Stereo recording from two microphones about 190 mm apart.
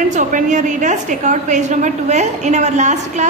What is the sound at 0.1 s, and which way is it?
A woman's voice, 40° right (ahead or behind).